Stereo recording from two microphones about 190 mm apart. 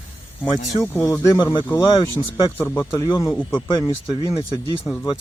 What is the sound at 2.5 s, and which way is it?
Speech, 10° left (ahead or behind).